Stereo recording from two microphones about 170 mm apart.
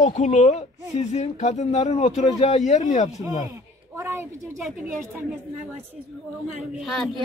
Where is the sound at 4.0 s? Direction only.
15° right (ahead or behind).